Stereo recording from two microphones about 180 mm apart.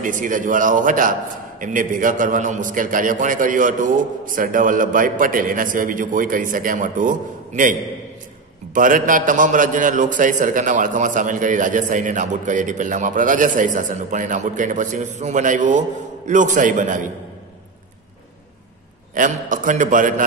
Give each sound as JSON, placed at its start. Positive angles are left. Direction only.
{"t": 0.0, "sound": "a man's voice", "side_deg": -45}
{"t": 8.7, "sound": "a man's voice", "side_deg": -50}
{"t": 19.1, "sound": "a man's voice", "side_deg": -45}